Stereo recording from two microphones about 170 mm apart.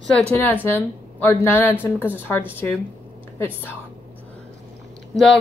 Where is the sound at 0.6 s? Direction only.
10° left (ahead or behind).